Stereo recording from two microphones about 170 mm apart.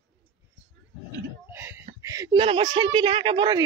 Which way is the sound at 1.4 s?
15° right (ahead or behind).